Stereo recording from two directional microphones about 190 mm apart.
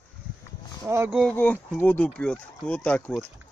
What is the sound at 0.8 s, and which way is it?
Speech, 15° right (ahead or behind).